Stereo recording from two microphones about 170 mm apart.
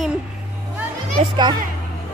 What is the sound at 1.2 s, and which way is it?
Speech, 25° right (ahead or behind).